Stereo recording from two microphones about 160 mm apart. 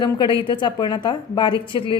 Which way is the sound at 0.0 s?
25° left (ahead or behind).